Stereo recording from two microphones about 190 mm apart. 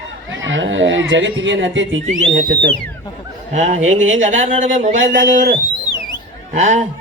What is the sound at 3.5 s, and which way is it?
Speech, 40° right (ahead or behind).